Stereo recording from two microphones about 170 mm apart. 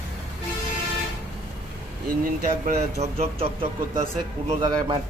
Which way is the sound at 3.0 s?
35° right (ahead or behind).